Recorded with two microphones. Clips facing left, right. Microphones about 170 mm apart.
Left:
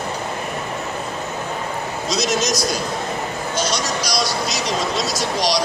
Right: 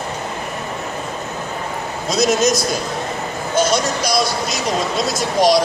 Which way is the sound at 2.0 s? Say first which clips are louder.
Right 6 dB; 50° right (ahead or behind).